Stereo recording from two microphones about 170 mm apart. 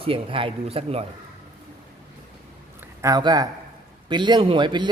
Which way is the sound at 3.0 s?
25° right (ahead or behind).